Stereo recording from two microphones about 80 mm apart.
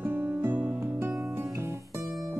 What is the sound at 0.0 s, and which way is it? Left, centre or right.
Music, right.